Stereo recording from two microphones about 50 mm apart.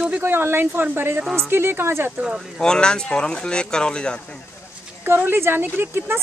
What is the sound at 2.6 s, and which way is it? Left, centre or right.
Speech, centre.